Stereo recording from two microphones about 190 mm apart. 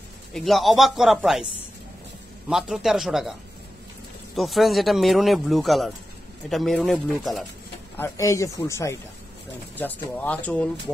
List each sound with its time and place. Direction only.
0.3 s speech: centre (ahead or behind)
2.5 s speech: centre (ahead or behind)
4.4 s speech: centre (ahead or behind)
8.0 s speech: 15° left (ahead or behind)